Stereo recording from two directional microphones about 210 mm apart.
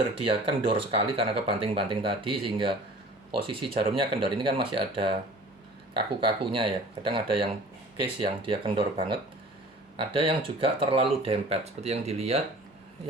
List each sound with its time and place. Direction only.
0.3 s speech: 25° right (ahead or behind)